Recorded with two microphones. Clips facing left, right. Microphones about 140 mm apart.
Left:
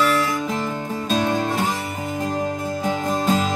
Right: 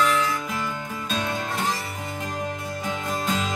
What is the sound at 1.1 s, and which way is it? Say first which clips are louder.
Music: left 7 dB; 40° left (ahead or behind).